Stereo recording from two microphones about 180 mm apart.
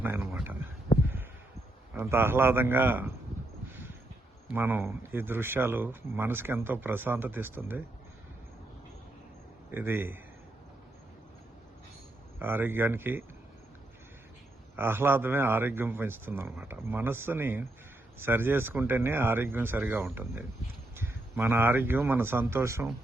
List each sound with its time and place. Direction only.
0.0 s a sound: 15° right (ahead or behind)
0.9 s heart sounds: 40° left (ahead or behind)
2.0 s speech: 15° right (ahead or behind)
4.5 s speech: 15° right (ahead or behind)
9.7 s speech: 15° right (ahead or behind)
12.4 s speech: 10° right (ahead or behind)
14.8 s speech: 10° right (ahead or behind)